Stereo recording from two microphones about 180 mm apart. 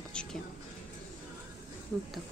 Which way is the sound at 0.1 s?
5° left (ahead or behind).